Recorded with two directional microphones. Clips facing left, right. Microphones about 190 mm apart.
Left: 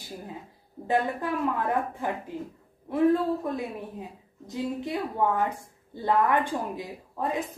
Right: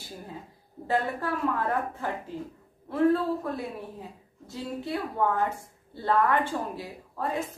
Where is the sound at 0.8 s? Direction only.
15° left (ahead or behind).